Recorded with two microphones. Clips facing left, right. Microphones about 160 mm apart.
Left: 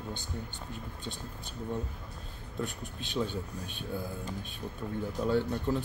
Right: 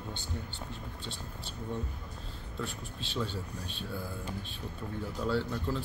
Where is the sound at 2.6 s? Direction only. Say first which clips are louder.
Left 2 dB; 15° left (ahead or behind).